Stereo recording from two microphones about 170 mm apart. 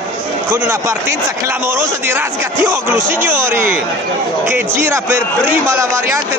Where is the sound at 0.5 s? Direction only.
15° right (ahead or behind).